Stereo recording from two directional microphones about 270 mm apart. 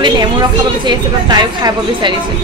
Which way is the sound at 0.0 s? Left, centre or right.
Centre.